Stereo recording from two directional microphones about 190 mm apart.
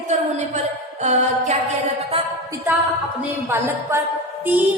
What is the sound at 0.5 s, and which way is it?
Music, 40° right (ahead or behind).